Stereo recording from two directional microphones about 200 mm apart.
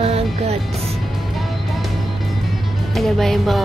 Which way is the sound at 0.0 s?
30° right (ahead or behind).